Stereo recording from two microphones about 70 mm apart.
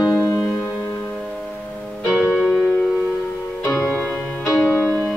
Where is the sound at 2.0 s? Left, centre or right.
Centre.